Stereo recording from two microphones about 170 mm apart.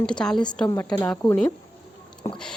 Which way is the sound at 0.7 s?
20° left (ahead or behind).